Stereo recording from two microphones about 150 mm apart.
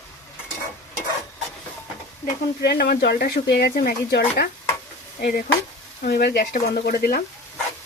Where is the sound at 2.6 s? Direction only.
90° left.